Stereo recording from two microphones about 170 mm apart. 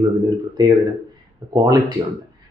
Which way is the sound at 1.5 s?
20° right (ahead or behind).